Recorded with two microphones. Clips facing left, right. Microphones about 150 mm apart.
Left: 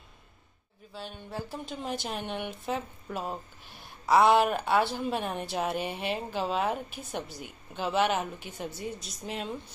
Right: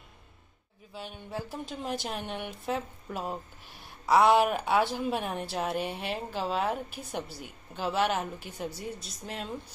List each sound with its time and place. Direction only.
0.9 s a woman's voice: 10° right (ahead or behind)